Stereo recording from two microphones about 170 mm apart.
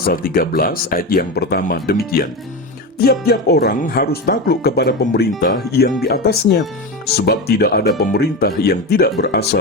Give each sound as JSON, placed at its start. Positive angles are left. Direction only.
{"t": 0.1, "sound": "speech", "side_deg": 60}